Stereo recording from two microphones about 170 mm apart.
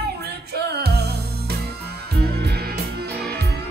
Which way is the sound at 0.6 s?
70° right (ahead or behind).